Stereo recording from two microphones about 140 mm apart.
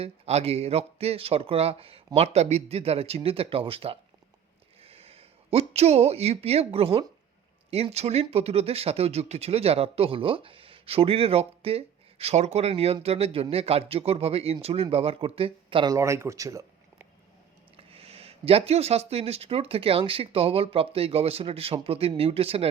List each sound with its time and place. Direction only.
0.0 s speech: 50° right (ahead or behind)
15.9 s speech: 20° right (ahead or behind)
17.7 s speech: 45° right (ahead or behind)